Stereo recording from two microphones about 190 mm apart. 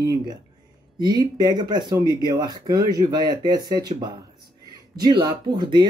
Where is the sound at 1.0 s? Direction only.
20° right (ahead or behind).